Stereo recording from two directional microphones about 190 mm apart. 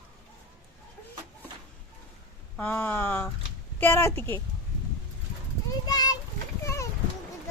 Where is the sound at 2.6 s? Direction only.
10° left (ahead or behind).